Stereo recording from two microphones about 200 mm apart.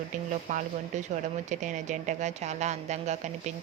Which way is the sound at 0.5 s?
40° right (ahead or behind).